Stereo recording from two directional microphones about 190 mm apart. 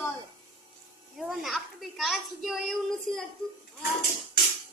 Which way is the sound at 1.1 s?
Centre (ahead or behind).